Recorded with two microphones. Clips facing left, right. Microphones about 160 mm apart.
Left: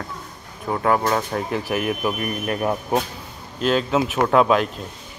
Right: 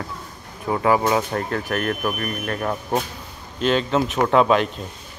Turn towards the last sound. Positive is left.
turn(degrees=0)  # may be behind; listen again after turning